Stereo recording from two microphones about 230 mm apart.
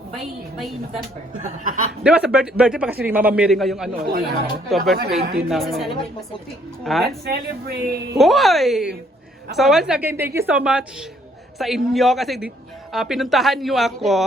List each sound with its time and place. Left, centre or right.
1.3 s speech: right
2.0 s a man's voice: centre
3.9 s speech: right
5.4 s a man's voice: centre
7.3 s speech: right
8.2 s a man's voice: centre